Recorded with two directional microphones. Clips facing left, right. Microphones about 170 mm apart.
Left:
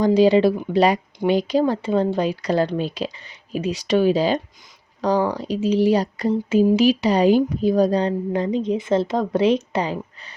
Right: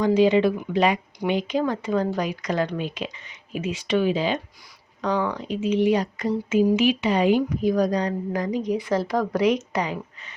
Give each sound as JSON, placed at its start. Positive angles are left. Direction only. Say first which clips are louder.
{"t": 0.0, "sound": "a woman's voice", "louder": "left 3 dB", "side_deg": 35}